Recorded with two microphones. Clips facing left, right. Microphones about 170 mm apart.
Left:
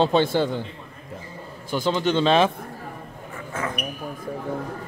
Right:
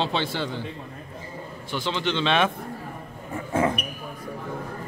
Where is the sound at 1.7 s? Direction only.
45° left (ahead or behind).